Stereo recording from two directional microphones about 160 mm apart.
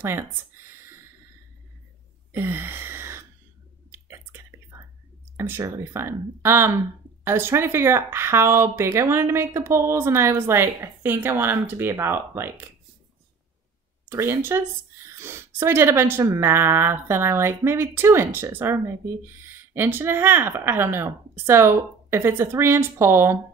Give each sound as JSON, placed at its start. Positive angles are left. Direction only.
{"t": 0.0, "sound": "a sound", "side_deg": -15}
{"t": 2.3, "sound": "gasp", "side_deg": -15}
{"t": 3.9, "sound": "whispering", "side_deg": -15}
{"t": 5.4, "sound": "a woman's voice", "side_deg": -15}
{"t": 14.0, "sound": "a woman's voice", "side_deg": -15}